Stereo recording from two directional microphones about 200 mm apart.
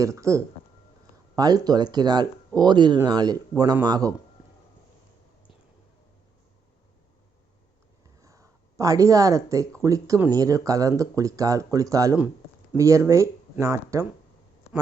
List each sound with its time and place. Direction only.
0.0 s speech: 15° right (ahead or behind)
8.2 s speech: 15° right (ahead or behind)